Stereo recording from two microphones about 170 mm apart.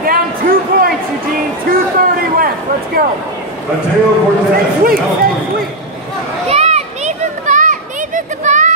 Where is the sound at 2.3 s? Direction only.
60° right (ahead or behind).